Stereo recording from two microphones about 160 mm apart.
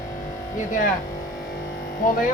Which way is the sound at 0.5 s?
55° left (ahead or behind).